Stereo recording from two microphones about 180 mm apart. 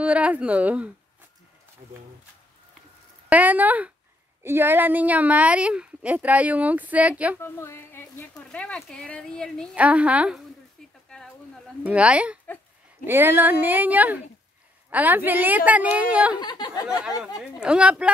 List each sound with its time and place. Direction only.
0.0 s a woman's voice: 5° right (ahead or behind)
3.3 s a woman's voice: 10° right (ahead or behind)
7.3 s speech: 15° left (ahead or behind)
9.8 s a woman's voice: 5° right (ahead or behind)
11.8 s a woman's voice: 5° right (ahead or behind)
16.3 s speech: 25° left (ahead or behind)
17.4 s speech: 5° right (ahead or behind)